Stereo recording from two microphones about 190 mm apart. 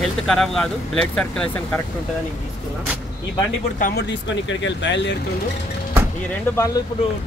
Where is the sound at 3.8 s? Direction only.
65° left (ahead or behind).